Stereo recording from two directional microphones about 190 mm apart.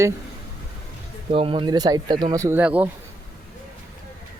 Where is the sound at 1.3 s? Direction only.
30° right (ahead or behind); by 2.9 s 10° right (ahead or behind).